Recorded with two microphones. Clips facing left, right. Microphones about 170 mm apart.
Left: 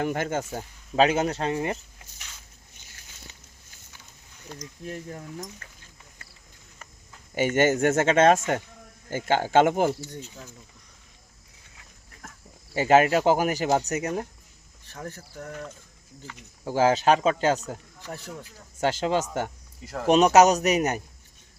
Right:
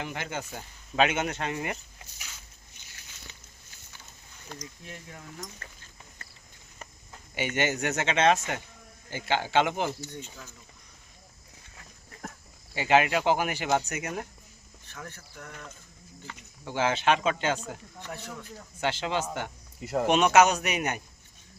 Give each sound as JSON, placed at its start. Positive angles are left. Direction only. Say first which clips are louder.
{"t": 0.0, "sound": "speech", "louder": "left 8 dB", "side_deg": 45}
{"t": 2.7, "sound": "a sound", "louder": "left 1 dB", "side_deg": 45}
{"t": 4.6, "sound": "speech", "louder": "left 8 dB", "side_deg": 40}
{"t": 7.3, "sound": "speech", "louder": "left 7 dB", "side_deg": 45}
{"t": 12.7, "sound": "speech", "louder": "left 5 dB", "side_deg": 45}
{"t": 16.6, "sound": "speech", "louder": "left 5 dB", "side_deg": 40}
{"t": 19.8, "sound": "speech", "louder": "right 6 dB", "side_deg": -25}
{"t": 20.1, "sound": "speech", "louder": "left 4 dB", "side_deg": 40}